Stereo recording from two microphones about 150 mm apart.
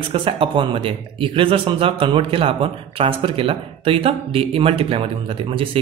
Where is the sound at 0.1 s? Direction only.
35° right (ahead or behind).